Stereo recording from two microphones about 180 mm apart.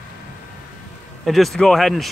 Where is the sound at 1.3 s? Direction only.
Centre (ahead or behind).